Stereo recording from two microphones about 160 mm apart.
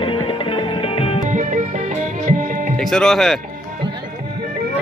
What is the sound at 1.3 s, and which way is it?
Music, 50° right (ahead or behind).